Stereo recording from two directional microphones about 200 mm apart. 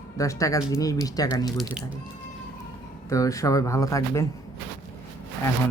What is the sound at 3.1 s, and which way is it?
Speech, 15° left (ahead or behind).